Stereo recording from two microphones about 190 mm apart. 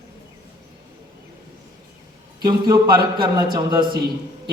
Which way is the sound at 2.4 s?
25° right (ahead or behind).